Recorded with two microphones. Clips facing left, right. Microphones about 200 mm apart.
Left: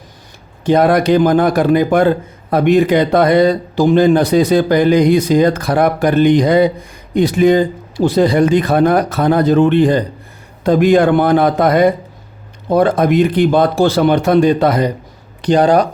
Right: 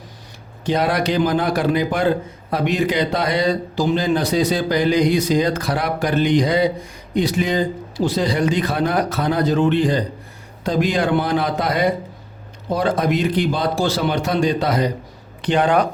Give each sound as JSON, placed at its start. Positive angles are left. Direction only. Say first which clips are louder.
{"t": 0.6, "sound": "a man's voice", "louder": "left 8 dB", "side_deg": 55}
{"t": 15.4, "sound": "speech", "louder": "left 6 dB", "side_deg": 40}